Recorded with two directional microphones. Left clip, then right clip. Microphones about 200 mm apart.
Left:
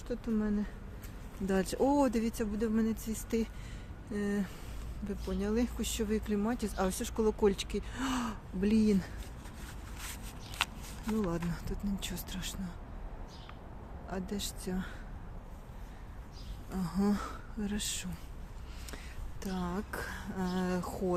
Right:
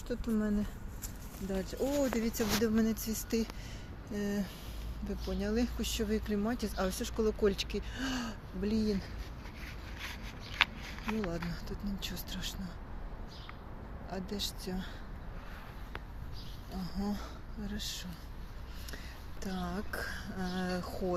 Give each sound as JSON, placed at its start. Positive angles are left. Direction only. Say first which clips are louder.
{"t": 0.1, "sound": "speech", "louder": "even", "side_deg": 15}
{"t": 1.5, "sound": "speech", "louder": "left 6 dB", "side_deg": 50}
{"t": 2.0, "sound": "speech", "louder": "left 2 dB", "side_deg": 30}
{"t": 2.3, "sound": "speech", "louder": "right 3 dB", "side_deg": 10}
{"t": 11.3, "sound": "speech", "louder": "left 2 dB", "side_deg": 40}
{"t": 14.1, "sound": "speech", "louder": "right 1 dB", "side_deg": 30}
{"t": 16.8, "sound": "speech", "louder": "left 7 dB", "side_deg": 50}
{"t": 19.4, "sound": "speech", "louder": "left 1 dB", "side_deg": 30}